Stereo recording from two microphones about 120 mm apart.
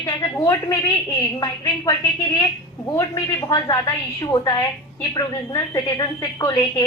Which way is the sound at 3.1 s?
35° left (ahead or behind).